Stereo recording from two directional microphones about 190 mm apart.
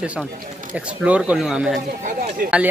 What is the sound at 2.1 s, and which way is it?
Speech, 45° right (ahead or behind).